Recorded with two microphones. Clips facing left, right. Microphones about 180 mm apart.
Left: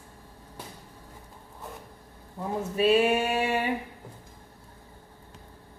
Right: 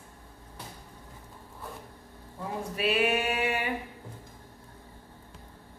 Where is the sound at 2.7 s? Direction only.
30° left (ahead or behind).